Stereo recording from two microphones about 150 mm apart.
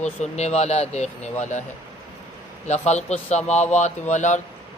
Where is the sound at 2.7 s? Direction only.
50° left (ahead or behind).